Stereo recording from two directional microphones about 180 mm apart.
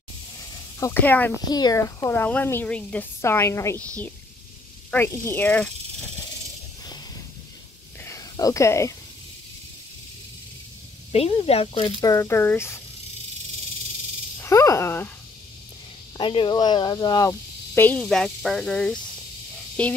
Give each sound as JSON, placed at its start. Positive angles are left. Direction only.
{"t": 0.7, "sound": "speech", "side_deg": 15}
{"t": 1.4, "sound": "speech", "side_deg": 20}
{"t": 4.9, "sound": "speech", "side_deg": 15}
{"t": 8.0, "sound": "a sound", "side_deg": 15}
{"t": 11.1, "sound": "speech", "side_deg": 35}
{"t": 14.4, "sound": "speech", "side_deg": 15}
{"t": 16.2, "sound": "speech", "side_deg": 25}